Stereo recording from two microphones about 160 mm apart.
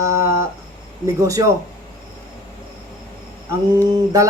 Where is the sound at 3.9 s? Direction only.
20° right (ahead or behind).